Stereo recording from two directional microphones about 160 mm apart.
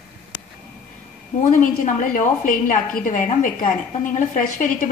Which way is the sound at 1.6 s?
55° left (ahead or behind).